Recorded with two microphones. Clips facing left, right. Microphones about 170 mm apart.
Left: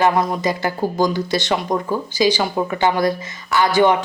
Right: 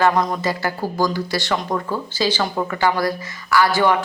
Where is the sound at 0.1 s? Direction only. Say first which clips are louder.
Left 1 dB; 5° left (ahead or behind).